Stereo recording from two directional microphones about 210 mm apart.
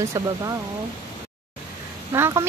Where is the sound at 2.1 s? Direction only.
10° right (ahead or behind).